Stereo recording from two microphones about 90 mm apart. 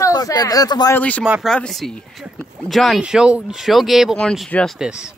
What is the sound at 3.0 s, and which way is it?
Speech, 10° right (ahead or behind).